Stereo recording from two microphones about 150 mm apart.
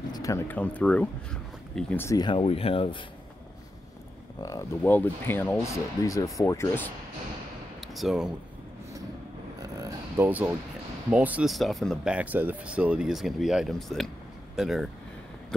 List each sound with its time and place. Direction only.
0.1 s a sound: 20° left (ahead or behind)
0.5 s speech: 10° left (ahead or behind)
2.0 s speech: 30° left (ahead or behind)
4.4 s speech: 20° left (ahead or behind)
7.8 s speech: centre (ahead or behind)
9.6 s a sound: 25° right (ahead or behind)
11.1 s speech: 10° right (ahead or behind)